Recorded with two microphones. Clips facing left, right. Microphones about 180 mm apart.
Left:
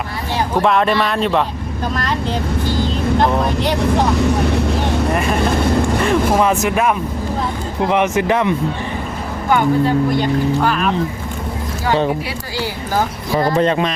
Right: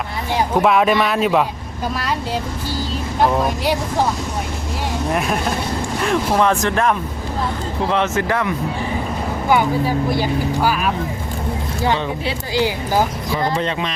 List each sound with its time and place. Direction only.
0.6 s speech: 5° right (ahead or behind)
3.2 s speech: 5° right (ahead or behind)
4.2 s speech: 70° left (ahead or behind)
5.1 s speech: centre (ahead or behind); by 8.5 s 20° left (ahead or behind)
9.5 s speech: 5° right (ahead or behind)
12.5 s speech: 15° right (ahead or behind)
13.3 s speech: 45° left (ahead or behind)